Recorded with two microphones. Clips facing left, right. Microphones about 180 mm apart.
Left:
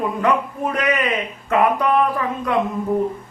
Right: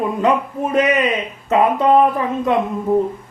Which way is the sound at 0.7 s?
20° right (ahead or behind).